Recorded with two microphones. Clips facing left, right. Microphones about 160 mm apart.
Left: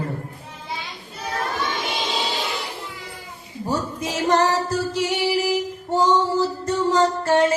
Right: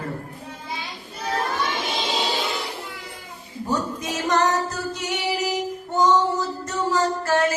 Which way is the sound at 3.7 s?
30° left (ahead or behind).